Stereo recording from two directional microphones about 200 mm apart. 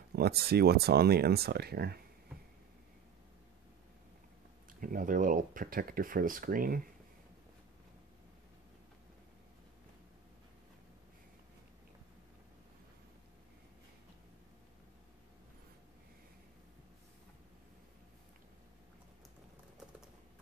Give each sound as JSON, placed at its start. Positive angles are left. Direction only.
{"t": 0.1, "sound": "speech", "side_deg": -50}
{"t": 4.7, "sound": "speech", "side_deg": -45}